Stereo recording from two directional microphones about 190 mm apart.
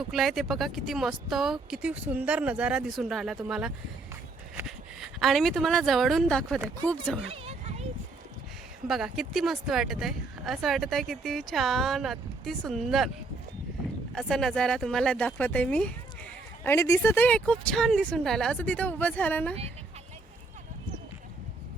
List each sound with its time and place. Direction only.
0.1 s speech: centre (ahead or behind)
7.3 s a sound: 35° right (ahead or behind)
8.9 s speech: centre (ahead or behind)
14.2 s speech: centre (ahead or behind)